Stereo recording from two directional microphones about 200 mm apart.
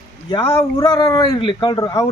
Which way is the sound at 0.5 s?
20° left (ahead or behind).